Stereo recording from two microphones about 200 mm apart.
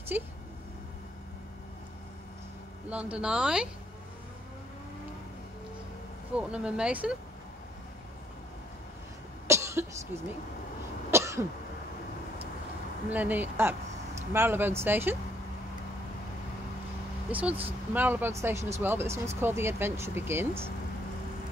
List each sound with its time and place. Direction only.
0.1 s speech: 10° right (ahead or behind)
2.9 s speech: 5° right (ahead or behind)
6.3 s speech: 5° right (ahead or behind)
9.5 s cough: 15° right (ahead or behind)
13.1 s speech: 10° right (ahead or behind)
17.3 s speech: 5° right (ahead or behind)